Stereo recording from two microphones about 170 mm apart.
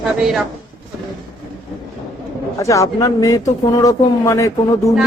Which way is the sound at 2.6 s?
20° left (ahead or behind).